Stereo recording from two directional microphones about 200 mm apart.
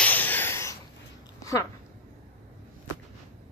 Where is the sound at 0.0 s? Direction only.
10° left (ahead or behind).